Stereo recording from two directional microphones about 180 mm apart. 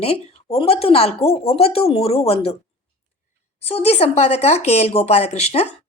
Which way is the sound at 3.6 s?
35° left (ahead or behind).